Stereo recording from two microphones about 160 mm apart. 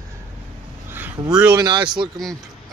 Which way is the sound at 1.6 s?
25° right (ahead or behind).